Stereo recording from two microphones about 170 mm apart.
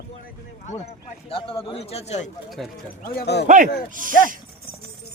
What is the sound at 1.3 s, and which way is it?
Speech, 35° left (ahead or behind).